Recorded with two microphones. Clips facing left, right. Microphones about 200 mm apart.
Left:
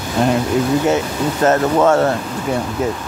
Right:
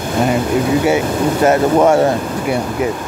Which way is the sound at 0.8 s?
10° right (ahead or behind).